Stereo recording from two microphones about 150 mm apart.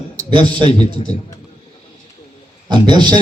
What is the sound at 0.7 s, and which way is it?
Speech, 40° left (ahead or behind).